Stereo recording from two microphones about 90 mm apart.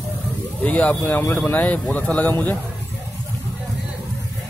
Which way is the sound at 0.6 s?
15° left (ahead or behind).